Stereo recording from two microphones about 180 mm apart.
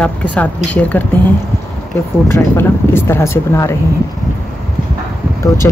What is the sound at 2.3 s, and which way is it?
Speech, 10° left (ahead or behind).